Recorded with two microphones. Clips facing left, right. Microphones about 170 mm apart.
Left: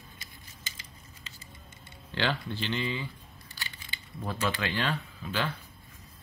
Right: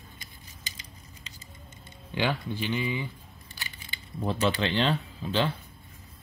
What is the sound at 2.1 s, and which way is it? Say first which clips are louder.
Speech: right 2 dB; 15° right (ahead or behind).